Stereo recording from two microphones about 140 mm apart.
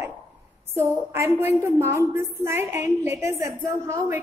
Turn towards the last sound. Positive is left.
turn(degrees=-15)  # may be behind; listen again after turning